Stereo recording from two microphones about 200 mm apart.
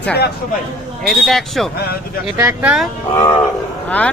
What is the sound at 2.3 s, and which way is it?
Speech, 10° right (ahead or behind).